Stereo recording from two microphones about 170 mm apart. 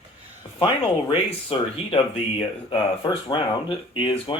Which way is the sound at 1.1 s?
35° left (ahead or behind).